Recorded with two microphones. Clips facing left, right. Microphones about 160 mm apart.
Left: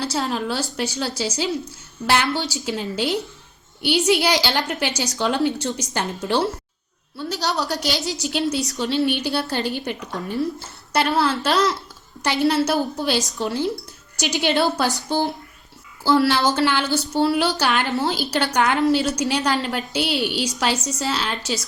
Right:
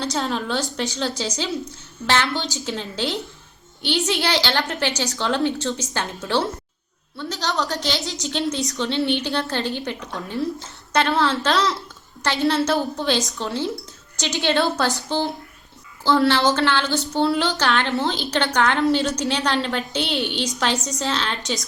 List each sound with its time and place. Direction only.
0.0 s a woman's voice: 5° left (ahead or behind)
2.3 s a woman's voice: 20° right (ahead or behind)
2.6 s a woman's voice: 10° left (ahead or behind)